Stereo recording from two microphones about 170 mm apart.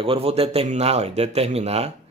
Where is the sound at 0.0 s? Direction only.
35° right (ahead or behind).